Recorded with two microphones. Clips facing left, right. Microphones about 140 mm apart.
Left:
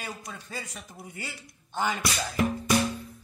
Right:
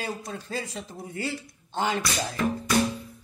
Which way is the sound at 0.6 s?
25° right (ahead or behind).